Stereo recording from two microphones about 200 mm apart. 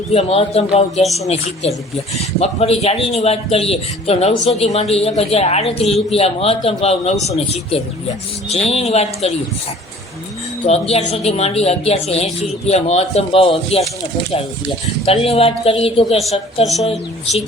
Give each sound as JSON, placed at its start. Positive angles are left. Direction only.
{"t": 0.1, "sound": "speech", "side_deg": 30}
{"t": 1.0, "sound": "speech", "side_deg": 0}
{"t": 1.6, "sound": "speech", "side_deg": 30}
{"t": 10.7, "sound": "speech", "side_deg": 30}
{"t": 15.0, "sound": "a woman's voice", "side_deg": 30}